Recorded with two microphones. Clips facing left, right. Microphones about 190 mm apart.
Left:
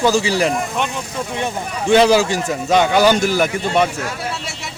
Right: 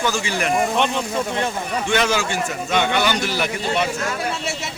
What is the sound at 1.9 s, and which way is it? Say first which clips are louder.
A man's voice: left 9 dB; 35° left (ahead or behind).